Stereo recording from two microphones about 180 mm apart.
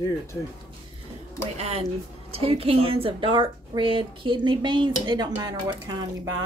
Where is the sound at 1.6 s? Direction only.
35° right (ahead or behind).